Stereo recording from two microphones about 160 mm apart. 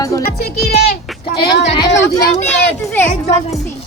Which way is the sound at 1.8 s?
15° left (ahead or behind).